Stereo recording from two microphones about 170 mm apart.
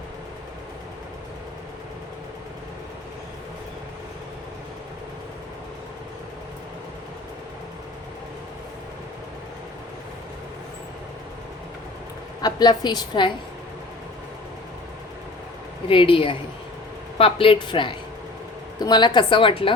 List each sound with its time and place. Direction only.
12.4 s a woman's voice: 25° left (ahead or behind)
15.9 s a woman's voice: 30° left (ahead or behind)